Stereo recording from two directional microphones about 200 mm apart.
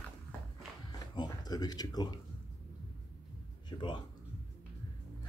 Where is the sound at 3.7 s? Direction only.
20° left (ahead or behind).